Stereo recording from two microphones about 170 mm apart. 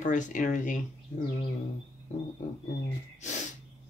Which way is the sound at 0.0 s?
50° left (ahead or behind).